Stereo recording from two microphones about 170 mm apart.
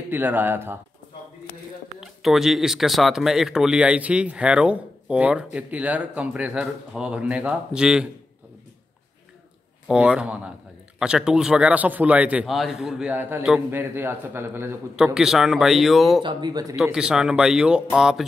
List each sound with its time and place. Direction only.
0.1 s a man's voice: 10° right (ahead or behind)
2.0 s speech: centre (ahead or behind)
9.8 s a man's voice: 5° right (ahead or behind)
15.1 s speech: centre (ahead or behind)
16.2 s speech: 25° right (ahead or behind)
16.7 s speech: 5° right (ahead or behind)